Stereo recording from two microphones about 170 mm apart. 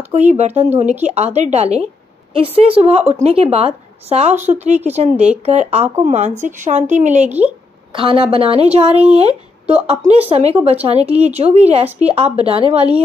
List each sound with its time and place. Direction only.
0.1 s a woman's voice: 40° right (ahead or behind)
7.2 s speech: 10° right (ahead or behind)
7.9 s a woman's voice: 30° right (ahead or behind)